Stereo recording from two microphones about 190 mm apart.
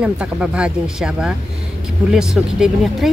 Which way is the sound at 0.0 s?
5° right (ahead or behind).